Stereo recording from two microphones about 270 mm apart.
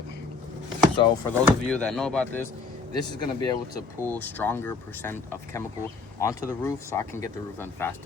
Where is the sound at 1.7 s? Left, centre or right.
Centre.